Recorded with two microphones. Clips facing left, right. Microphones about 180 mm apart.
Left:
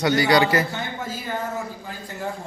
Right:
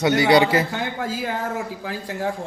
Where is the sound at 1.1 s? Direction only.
90° right.